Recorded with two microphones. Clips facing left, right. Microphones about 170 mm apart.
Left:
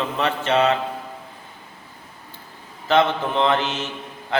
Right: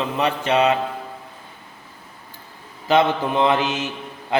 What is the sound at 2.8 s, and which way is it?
Mantra, 15° right (ahead or behind).